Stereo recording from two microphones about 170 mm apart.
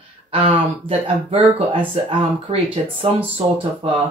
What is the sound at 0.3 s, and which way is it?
Speech, 30° right (ahead or behind).